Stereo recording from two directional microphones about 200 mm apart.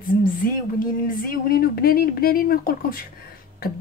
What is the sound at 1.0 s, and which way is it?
Speech, 45° left (ahead or behind).